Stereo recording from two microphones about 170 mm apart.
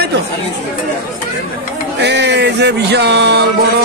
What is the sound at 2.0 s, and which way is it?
Speech, 85° right.